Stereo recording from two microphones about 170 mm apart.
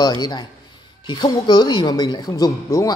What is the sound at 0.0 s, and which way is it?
Speech, 25° left (ahead or behind).